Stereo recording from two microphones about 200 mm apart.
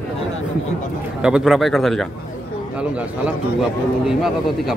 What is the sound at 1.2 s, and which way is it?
A man's voice, centre (ahead or behind).